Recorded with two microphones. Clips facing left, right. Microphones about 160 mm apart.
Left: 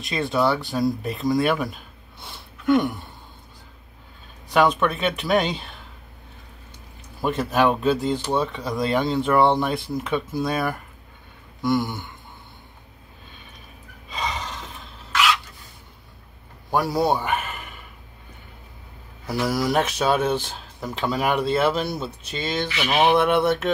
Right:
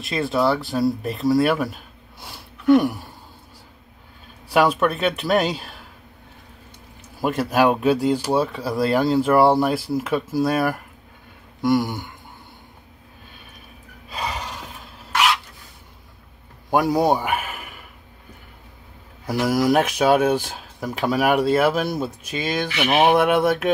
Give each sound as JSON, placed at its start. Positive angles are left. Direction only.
{"t": 0.0, "sound": "speech", "side_deg": 0}
{"t": 4.5, "sound": "speech", "side_deg": -10}
{"t": 7.2, "sound": "speech", "side_deg": -10}
{"t": 14.0, "sound": "gasp", "side_deg": -10}
{"t": 16.7, "sound": "a man's voice", "side_deg": -15}
{"t": 19.2, "sound": "speech", "side_deg": -10}
{"t": 22.7, "sound": "a sound", "side_deg": -55}
{"t": 23.0, "sound": "speech", "side_deg": -10}